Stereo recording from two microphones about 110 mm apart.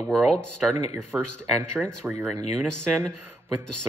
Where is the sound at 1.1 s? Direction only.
15° right (ahead or behind).